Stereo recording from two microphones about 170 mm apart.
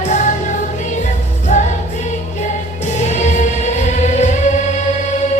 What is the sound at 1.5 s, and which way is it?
Music, 45° left (ahead or behind).